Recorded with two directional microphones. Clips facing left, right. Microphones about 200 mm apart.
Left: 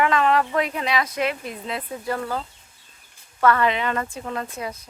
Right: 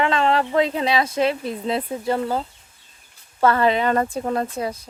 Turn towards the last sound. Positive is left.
turn(degrees=-35)  # may be behind; listen again after turning